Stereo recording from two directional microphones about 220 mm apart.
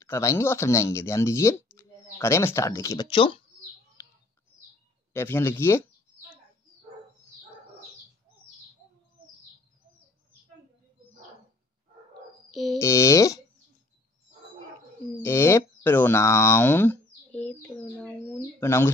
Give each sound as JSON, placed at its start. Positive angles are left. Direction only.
{"t": 0.0, "sound": "speech", "side_deg": 10}
{"t": 5.1, "sound": "speech", "side_deg": 10}
{"t": 12.7, "sound": "speech", "side_deg": 10}
{"t": 15.2, "sound": "speech", "side_deg": 10}